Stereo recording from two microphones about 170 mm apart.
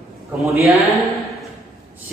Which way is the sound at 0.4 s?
Centre (ahead or behind).